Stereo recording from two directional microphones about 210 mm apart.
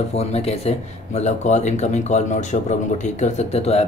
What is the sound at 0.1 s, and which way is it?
Speech, 30° left (ahead or behind).